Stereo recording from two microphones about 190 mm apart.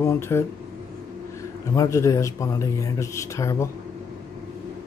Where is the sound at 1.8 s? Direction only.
15° left (ahead or behind).